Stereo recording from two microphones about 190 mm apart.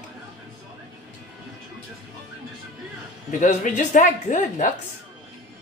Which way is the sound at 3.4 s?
40° left (ahead or behind).